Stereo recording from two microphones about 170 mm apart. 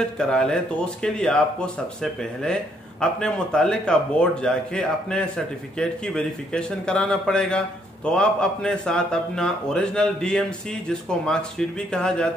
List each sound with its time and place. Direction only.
0.2 s a man's voice: 5° left (ahead or behind)